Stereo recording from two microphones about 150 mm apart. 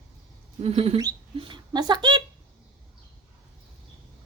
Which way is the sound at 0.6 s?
45° right (ahead or behind).